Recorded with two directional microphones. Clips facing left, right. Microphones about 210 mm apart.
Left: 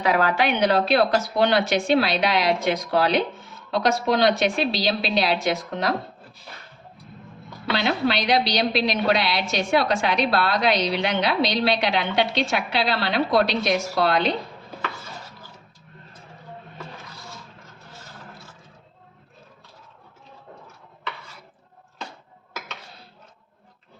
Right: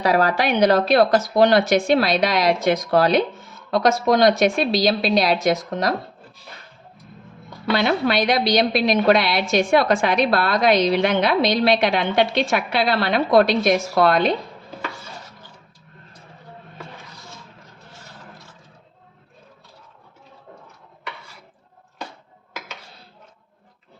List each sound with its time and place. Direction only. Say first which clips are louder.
0.0 s a woman's voice: right 2 dB; 40° right (ahead or behind)
7.9 s a woman's voice: right 1 dB; 50° right (ahead or behind)